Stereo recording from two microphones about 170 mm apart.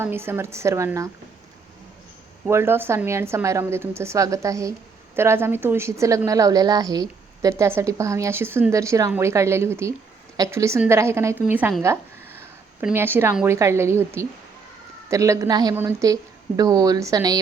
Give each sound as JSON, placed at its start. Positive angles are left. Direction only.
{"t": 0.0, "sound": "a woman's voice", "side_deg": -15}
{"t": 2.5, "sound": "a woman's voice", "side_deg": -15}
{"t": 12.8, "sound": "a woman's voice", "side_deg": -15}